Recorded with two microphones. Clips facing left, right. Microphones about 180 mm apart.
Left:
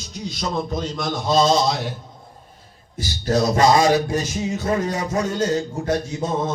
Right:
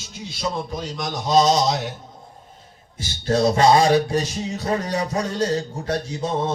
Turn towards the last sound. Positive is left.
turn(degrees=-30)  # may be behind; listen again after turning